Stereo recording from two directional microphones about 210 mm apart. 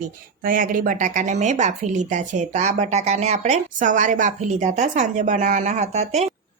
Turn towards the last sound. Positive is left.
turn(degrees=-30)  # may be behind; listen again after turning